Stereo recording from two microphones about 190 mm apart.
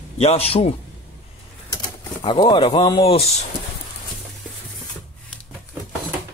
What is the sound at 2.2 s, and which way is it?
Speech, 25° left (ahead or behind).